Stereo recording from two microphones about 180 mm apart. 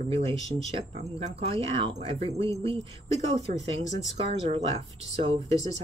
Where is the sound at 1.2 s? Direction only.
35° right (ahead or behind).